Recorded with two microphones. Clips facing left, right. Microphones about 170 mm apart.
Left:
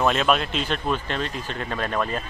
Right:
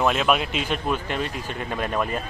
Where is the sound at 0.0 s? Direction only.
5° right (ahead or behind).